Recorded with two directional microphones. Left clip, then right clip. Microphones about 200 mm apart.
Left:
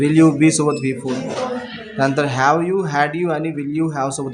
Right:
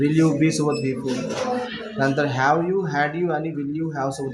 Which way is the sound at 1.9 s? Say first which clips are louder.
Left 4 dB; 30° left (ahead or behind).